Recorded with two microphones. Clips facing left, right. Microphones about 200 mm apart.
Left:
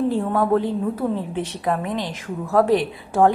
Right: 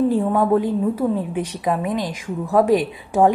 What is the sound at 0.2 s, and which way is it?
Speech, 10° right (ahead or behind).